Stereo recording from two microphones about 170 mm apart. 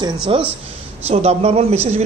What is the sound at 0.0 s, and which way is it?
A man's voice, 30° right (ahead or behind).